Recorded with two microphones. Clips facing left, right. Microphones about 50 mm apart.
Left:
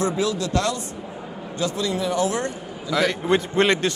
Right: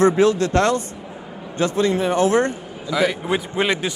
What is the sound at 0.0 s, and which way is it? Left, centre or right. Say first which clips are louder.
A man's voice: right 8 dB; right.